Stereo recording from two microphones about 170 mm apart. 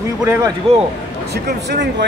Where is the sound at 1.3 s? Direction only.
90° right.